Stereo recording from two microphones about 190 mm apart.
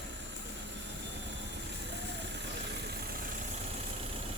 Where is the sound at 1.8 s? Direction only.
65° right (ahead or behind).